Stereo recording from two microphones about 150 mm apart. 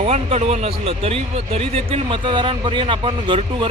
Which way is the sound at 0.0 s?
45° right (ahead or behind).